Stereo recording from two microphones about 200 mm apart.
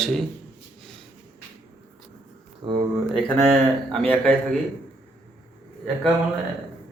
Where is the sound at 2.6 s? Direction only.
20° right (ahead or behind).